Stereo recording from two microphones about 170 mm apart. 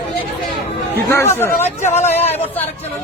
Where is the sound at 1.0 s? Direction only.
15° left (ahead or behind).